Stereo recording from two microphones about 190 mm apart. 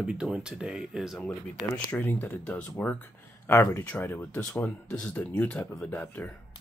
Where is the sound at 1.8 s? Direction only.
10° left (ahead or behind).